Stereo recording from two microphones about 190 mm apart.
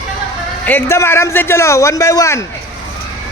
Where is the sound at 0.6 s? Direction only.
10° left (ahead or behind).